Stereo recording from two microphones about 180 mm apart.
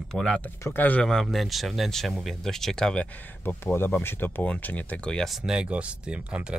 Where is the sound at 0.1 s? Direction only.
5° left (ahead or behind).